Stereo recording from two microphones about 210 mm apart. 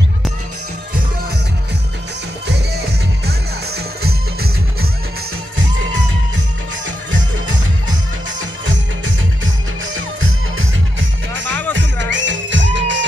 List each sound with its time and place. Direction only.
3.3 s music: 50° right (ahead or behind)
8.6 s music: 65° right (ahead or behind)
11.7 s music: 60° right (ahead or behind)